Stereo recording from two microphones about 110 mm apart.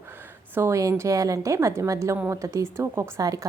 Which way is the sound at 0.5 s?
25° right (ahead or behind).